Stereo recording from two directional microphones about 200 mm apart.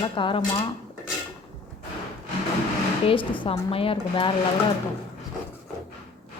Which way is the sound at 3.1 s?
25° left (ahead or behind).